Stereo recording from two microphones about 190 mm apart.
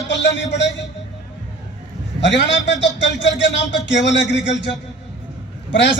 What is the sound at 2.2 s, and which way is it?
A man's voice, 70° left (ahead or behind).